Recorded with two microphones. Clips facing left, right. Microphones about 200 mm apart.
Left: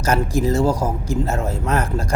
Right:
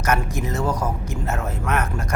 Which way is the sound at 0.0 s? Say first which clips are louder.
Left 4 dB; 30° left (ahead or behind).